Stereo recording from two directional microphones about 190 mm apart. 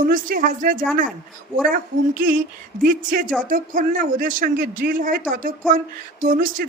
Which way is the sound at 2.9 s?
45° right (ahead or behind).